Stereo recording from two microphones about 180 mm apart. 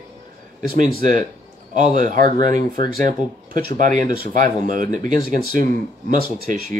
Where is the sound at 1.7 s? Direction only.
45° right (ahead or behind).